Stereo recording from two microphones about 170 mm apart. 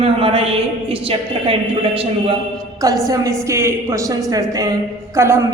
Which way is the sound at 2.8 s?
20° right (ahead or behind).